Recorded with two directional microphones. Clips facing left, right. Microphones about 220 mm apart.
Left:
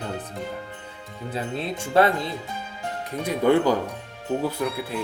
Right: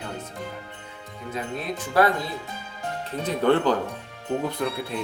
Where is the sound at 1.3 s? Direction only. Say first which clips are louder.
Left 1 dB; 30° left (ahead or behind).